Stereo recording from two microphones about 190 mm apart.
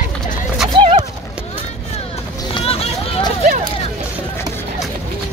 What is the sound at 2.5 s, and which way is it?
Vehicle, 30° left (ahead or behind).